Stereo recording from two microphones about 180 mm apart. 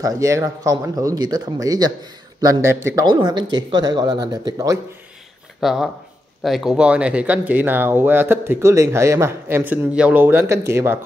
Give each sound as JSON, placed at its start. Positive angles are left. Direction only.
{"t": 0.0, "sound": "speech", "side_deg": -20}
{"t": 5.6, "sound": "speech", "side_deg": 0}